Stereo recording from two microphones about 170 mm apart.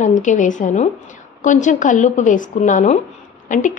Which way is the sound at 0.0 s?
45° left (ahead or behind).